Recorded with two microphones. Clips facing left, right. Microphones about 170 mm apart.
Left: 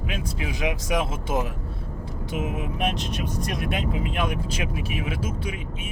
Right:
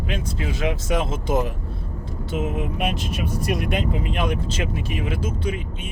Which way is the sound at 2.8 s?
5° right (ahead or behind).